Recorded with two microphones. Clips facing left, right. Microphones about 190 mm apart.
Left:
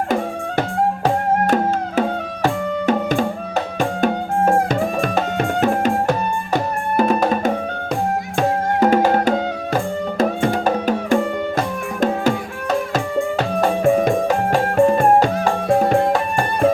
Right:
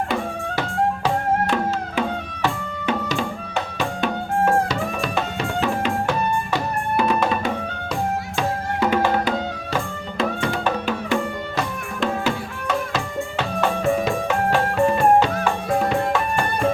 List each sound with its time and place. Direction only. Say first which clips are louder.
1.0 s music: left 3 dB; 45° left (ahead or behind)